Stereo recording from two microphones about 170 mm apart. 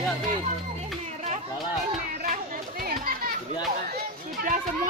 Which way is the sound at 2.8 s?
60° right (ahead or behind).